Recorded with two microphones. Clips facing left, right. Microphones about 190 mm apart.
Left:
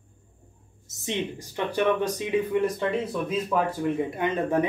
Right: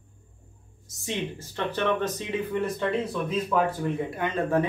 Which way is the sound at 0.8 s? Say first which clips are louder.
Left 2 dB; 20° left (ahead or behind).